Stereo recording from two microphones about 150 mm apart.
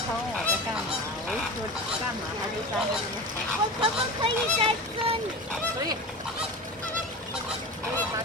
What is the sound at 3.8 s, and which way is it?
Speech, 35° right (ahead or behind).